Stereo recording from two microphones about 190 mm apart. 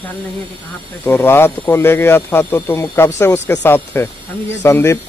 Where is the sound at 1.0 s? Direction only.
10° left (ahead or behind).